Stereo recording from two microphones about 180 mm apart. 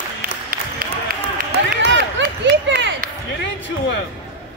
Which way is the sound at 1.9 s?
90° right.